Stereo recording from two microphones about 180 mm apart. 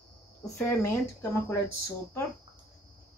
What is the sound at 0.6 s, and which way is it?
Speech, 15° left (ahead or behind).